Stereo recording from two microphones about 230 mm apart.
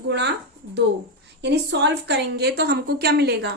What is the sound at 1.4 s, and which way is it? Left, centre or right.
A woman's voice, right.